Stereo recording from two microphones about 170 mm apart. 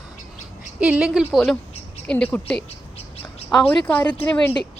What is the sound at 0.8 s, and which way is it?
Speech, 5° right (ahead or behind).